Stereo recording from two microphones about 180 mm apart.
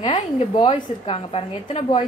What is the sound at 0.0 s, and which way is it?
A woman's voice, 30° left (ahead or behind).